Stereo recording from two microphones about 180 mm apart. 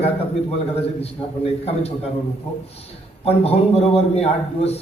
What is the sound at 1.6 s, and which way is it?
Speech, 35° left (ahead or behind).